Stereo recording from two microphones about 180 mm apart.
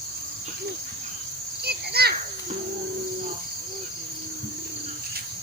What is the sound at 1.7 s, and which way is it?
Cricket, 60° right (ahead or behind).